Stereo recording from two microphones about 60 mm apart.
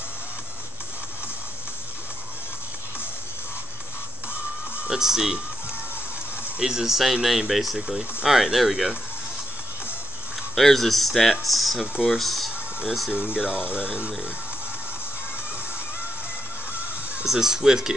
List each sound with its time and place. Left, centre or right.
4.8 s speech: centre
6.6 s speech: centre
10.5 s speech: centre
13.1 s speech: centre
17.2 s speech: centre